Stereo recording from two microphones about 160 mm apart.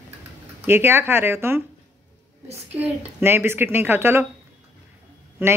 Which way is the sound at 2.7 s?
10° right (ahead or behind).